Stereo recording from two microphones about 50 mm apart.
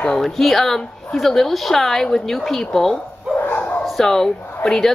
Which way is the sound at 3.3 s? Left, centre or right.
Left.